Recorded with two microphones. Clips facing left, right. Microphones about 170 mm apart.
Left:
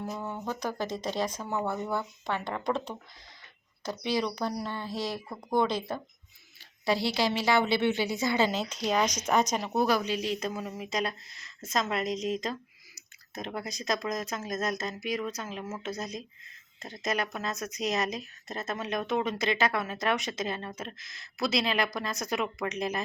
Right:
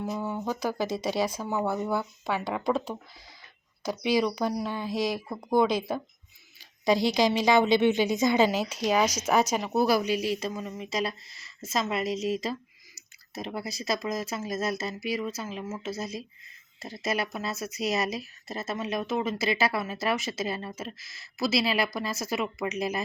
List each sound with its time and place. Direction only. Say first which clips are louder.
0.0 s speech: right 4 dB; 5° right (ahead or behind)
10.5 s a woman's voice: right 1 dB; 5° left (ahead or behind)